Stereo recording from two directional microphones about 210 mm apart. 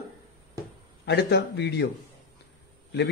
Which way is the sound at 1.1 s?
50° left (ahead or behind).